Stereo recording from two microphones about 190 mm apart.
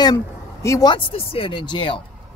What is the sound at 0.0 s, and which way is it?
Speech, 20° left (ahead or behind).